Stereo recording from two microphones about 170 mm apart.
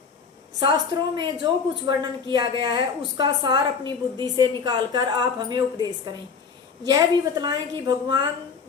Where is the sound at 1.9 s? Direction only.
25° right (ahead or behind).